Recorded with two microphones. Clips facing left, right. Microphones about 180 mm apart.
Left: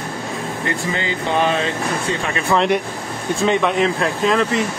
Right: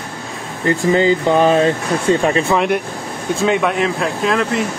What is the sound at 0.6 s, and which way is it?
Speech, 40° right (ahead or behind).